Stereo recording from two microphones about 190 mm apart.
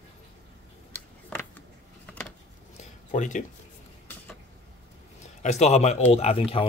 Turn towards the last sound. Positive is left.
turn(degrees=30)  # may be behind; listen again after turning